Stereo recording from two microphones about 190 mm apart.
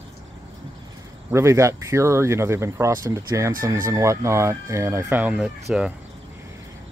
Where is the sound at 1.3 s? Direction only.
15° right (ahead or behind).